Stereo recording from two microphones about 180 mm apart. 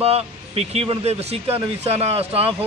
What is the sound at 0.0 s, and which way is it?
Speech, 35° right (ahead or behind).